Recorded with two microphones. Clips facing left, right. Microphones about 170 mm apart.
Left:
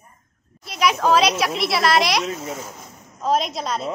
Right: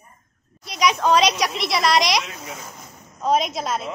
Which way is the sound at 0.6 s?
5° left (ahead or behind).